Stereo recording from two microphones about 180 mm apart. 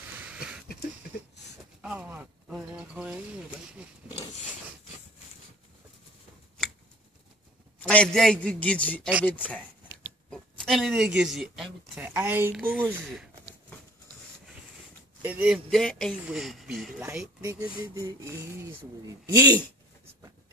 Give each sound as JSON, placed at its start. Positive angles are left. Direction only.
{"t": 0.2, "sound": "a sound", "side_deg": -5}
{"t": 1.8, "sound": "speech", "side_deg": -10}
{"t": 7.9, "sound": "a man's voice", "side_deg": 5}
{"t": 15.2, "sound": "speech", "side_deg": -5}
{"t": 17.0, "sound": "mantra", "side_deg": -15}
{"t": 19.3, "sound": "speech", "side_deg": -20}